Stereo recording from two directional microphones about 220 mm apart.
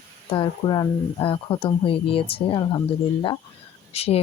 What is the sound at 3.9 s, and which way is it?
Speech, 25° left (ahead or behind).